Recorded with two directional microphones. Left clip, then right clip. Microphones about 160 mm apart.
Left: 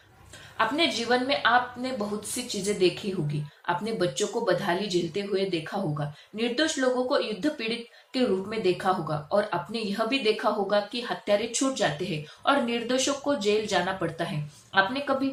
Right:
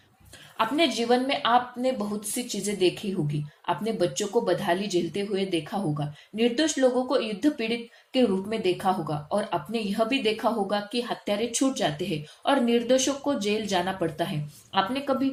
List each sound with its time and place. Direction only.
0.5 s speech: 35° right (ahead or behind)